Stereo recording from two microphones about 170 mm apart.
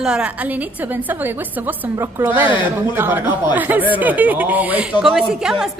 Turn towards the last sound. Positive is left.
turn(degrees=0)  # may be behind; listen again after turning